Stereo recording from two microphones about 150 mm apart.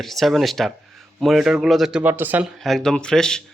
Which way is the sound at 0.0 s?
Centre (ahead or behind).